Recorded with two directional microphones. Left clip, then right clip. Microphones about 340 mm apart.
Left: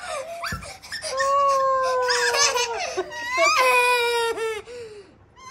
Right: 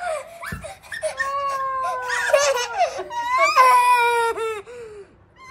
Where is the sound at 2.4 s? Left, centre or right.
Centre.